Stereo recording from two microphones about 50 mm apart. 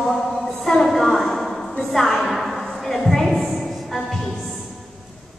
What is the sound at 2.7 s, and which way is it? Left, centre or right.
Music, centre.